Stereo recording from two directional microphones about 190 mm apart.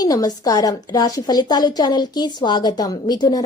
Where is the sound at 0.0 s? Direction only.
20° left (ahead or behind).